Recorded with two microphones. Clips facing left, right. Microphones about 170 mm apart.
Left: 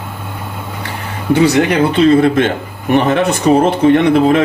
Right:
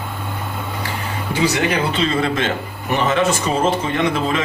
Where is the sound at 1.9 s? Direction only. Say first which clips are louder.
Left 10 dB; 55° left (ahead or behind).